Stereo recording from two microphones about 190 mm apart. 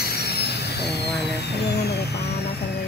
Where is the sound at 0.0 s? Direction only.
55° left (ahead or behind).